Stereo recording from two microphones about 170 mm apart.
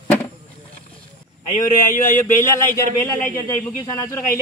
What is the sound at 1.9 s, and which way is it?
Speech, 55° left (ahead or behind).